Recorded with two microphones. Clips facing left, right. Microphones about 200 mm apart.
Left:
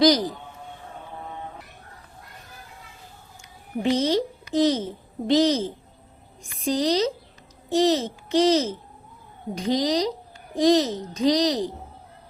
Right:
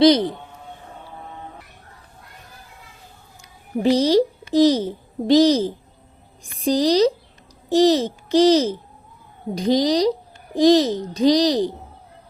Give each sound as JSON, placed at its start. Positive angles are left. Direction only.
{"t": 0.0, "sound": "a man's voice", "side_deg": -25}
{"t": 3.8, "sound": "a child's voice", "side_deg": -35}